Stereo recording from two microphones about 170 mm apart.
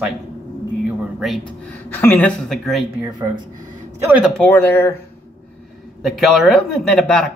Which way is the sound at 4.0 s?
10° right (ahead or behind).